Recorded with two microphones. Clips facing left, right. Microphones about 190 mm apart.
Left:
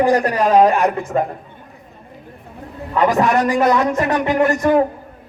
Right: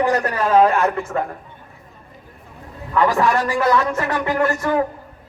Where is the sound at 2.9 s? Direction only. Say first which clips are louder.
Left 2 dB; 20° left (ahead or behind).